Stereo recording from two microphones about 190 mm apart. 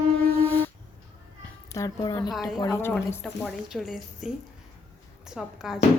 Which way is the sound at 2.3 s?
Centre (ahead or behind).